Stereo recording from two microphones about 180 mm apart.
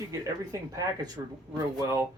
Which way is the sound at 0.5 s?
20° right (ahead or behind).